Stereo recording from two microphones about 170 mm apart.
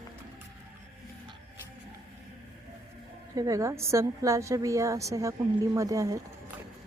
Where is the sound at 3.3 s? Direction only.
20° right (ahead or behind).